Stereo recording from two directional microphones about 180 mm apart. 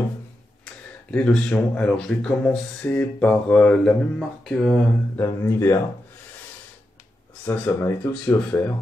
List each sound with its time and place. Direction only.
1.1 s speech: 5° left (ahead or behind)
5.1 s speech: 15° left (ahead or behind)
7.4 s speech: 15° left (ahead or behind)